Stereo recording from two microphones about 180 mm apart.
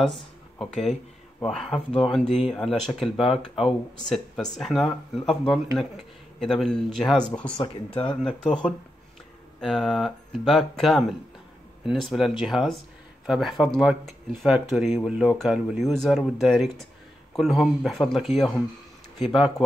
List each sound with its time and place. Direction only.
0.0 s speech: centre (ahead or behind)
7.5 s speech: 25° left (ahead or behind)
8.2 s speech: 5° left (ahead or behind)